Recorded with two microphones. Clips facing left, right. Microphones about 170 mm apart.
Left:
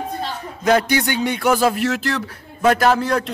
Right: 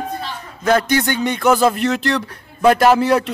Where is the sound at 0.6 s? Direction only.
10° left (ahead or behind).